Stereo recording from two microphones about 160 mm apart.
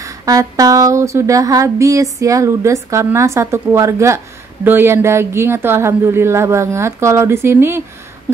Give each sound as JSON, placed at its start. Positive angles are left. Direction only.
{"t": 0.0, "sound": "speech", "side_deg": -20}